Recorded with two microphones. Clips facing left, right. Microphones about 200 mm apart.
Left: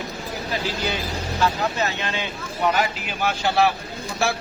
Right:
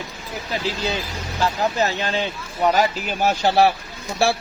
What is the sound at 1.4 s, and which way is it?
Speech, 35° right (ahead or behind).